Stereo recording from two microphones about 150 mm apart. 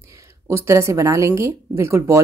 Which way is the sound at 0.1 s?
20° right (ahead or behind).